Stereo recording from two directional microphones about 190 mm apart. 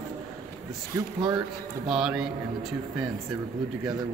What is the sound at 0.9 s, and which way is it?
Speech, 15° right (ahead or behind).